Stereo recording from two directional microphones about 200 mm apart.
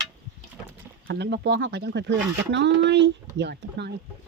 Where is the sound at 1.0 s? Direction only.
55° right (ahead or behind).